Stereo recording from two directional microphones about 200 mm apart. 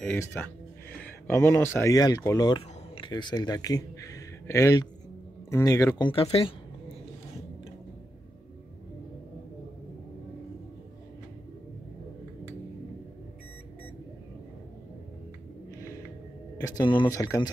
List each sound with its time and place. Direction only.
0.0 s speech: 10° left (ahead or behind); by 6.5 s 30° left (ahead or behind)
16.6 s speech: 20° left (ahead or behind)